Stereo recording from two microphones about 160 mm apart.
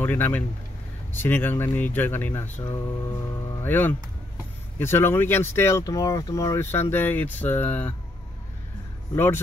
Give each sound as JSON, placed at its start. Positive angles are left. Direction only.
{"t": 0.0, "sound": "speech", "side_deg": 10}
{"t": 3.6, "sound": "speech", "side_deg": 15}
{"t": 9.1, "sound": "speech", "side_deg": 15}